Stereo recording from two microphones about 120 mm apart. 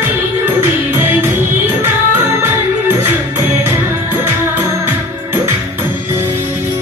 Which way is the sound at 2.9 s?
20° right (ahead or behind).